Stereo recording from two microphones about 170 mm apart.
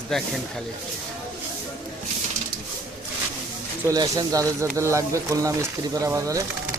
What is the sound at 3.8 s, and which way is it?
Speech, 20° right (ahead or behind).